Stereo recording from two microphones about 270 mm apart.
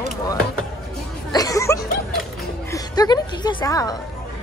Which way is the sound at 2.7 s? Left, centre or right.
Centre.